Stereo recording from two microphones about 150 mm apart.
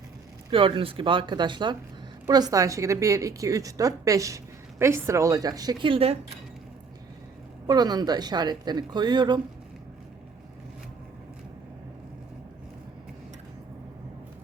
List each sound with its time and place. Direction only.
0.5 s a woman's voice: 35° right (ahead or behind)
7.7 s a woman's voice: 25° right (ahead or behind)